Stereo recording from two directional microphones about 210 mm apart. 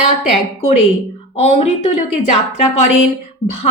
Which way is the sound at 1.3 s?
30° left (ahead or behind).